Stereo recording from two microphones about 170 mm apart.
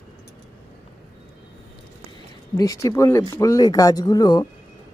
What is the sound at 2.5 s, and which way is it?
Speech, 20° left (ahead or behind).